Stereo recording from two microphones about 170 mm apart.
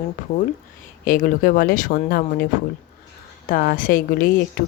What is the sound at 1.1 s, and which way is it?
Speech, 55° left (ahead or behind).